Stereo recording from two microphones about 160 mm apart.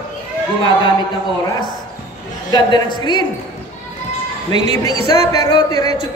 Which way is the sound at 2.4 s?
25° left (ahead or behind).